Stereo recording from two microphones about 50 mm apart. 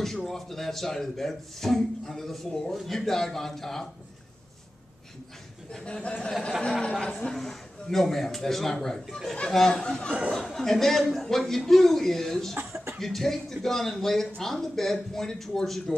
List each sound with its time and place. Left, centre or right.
0.0 s speech: centre
5.9 s a man's voice: left; by 15.8 s centre